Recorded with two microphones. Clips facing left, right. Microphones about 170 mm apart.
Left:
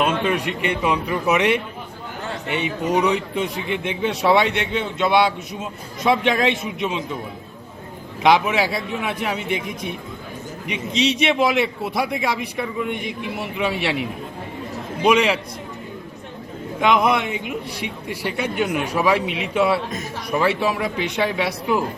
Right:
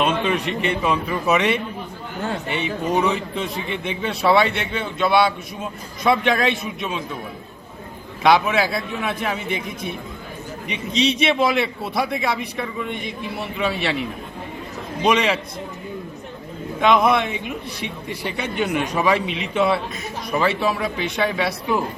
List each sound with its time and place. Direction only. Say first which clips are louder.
0.0 s a man's voice: even; 5° left (ahead or behind)
8.2 s a man's voice: even; 15° left (ahead or behind)
16.8 s a man's voice: right 1 dB; 15° left (ahead or behind)